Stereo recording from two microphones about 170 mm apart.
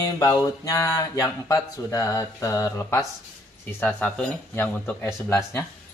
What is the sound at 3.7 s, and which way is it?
Speech, 10° left (ahead or behind).